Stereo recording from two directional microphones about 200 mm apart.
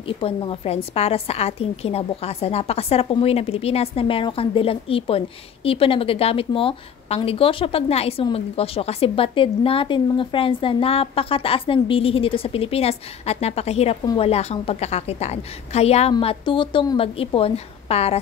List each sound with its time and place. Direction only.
0.0 s a woman's voice: 25° left (ahead or behind)